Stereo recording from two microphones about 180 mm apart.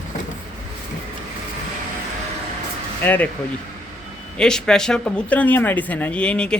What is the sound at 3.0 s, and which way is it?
Speech, 10° left (ahead or behind).